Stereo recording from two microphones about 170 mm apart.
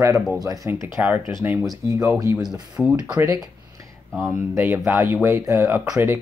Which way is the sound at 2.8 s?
10° right (ahead or behind).